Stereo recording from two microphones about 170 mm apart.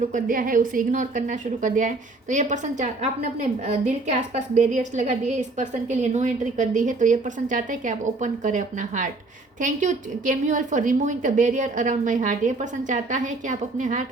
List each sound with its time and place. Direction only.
0.1 s a woman's voice: 55° right (ahead or behind)